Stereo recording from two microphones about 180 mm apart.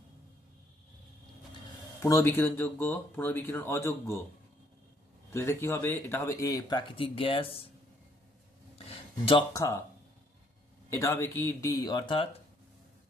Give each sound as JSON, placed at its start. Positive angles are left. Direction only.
{"t": 2.0, "sound": "speech", "side_deg": 15}
{"t": 5.3, "sound": "speech", "side_deg": 15}
{"t": 8.7, "sound": "a sound", "side_deg": 30}
{"t": 9.5, "sound": "speech", "side_deg": 20}
{"t": 10.9, "sound": "speech", "side_deg": 15}